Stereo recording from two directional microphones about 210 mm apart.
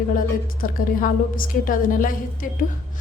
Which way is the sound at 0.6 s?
40° left (ahead or behind).